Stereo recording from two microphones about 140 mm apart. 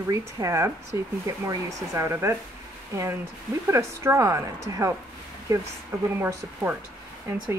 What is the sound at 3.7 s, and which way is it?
Speech, 20° right (ahead or behind).